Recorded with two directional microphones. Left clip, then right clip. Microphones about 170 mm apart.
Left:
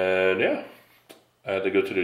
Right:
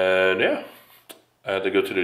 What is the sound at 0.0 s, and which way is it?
Speech, centre (ahead or behind).